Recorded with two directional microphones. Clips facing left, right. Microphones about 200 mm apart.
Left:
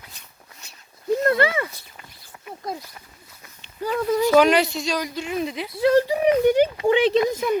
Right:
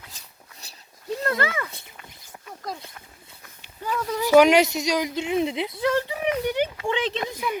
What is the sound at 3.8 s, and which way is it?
Speech, 25° left (ahead or behind).